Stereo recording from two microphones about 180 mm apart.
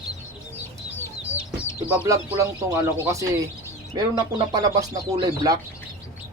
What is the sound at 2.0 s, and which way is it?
Speech, 15° right (ahead or behind).